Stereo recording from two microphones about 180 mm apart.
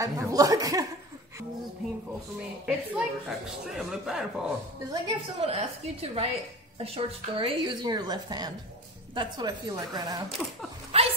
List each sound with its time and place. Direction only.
0.0 s speech: 20° right (ahead or behind)
2.6 s a woman's voice: 5° right (ahead or behind)
5.0 s a woman's voice: 35° right (ahead or behind)
10.9 s dog: 35° right (ahead or behind)